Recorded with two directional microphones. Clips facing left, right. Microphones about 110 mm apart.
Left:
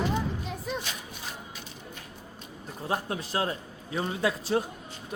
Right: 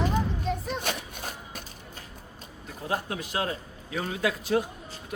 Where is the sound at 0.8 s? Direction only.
55° right (ahead or behind).